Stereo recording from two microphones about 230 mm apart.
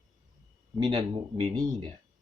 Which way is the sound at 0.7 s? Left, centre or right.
Right.